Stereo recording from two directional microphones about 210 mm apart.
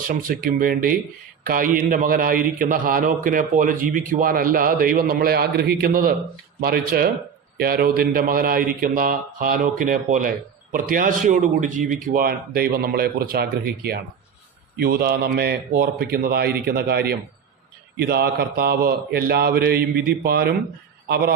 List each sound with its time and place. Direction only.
0.1 s a man's voice: 40° right (ahead or behind)